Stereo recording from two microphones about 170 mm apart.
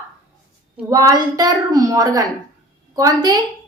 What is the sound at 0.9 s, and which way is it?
Speech, 20° right (ahead or behind).